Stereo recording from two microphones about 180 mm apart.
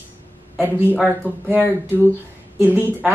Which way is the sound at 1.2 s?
10° right (ahead or behind).